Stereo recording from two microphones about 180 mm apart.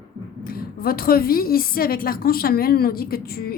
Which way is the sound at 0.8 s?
55° left (ahead or behind).